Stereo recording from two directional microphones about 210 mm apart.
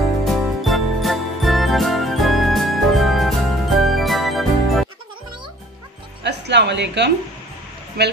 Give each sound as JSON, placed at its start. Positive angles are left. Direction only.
{"t": 0.2, "sound": "jingle", "side_deg": 0}
{"t": 6.2, "sound": "a sound", "side_deg": -55}
{"t": 8.0, "sound": "speech", "side_deg": -50}